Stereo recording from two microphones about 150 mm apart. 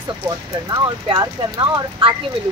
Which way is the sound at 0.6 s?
25° right (ahead or behind).